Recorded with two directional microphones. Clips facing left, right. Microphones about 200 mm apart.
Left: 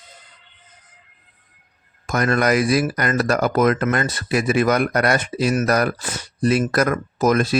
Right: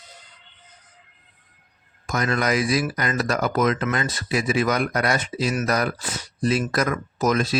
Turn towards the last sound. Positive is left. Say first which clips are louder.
# left 4 dB
turn(degrees=55)  # may be behind; listen again after turning